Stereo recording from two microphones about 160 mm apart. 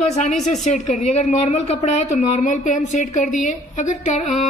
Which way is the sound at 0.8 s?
45° left (ahead or behind).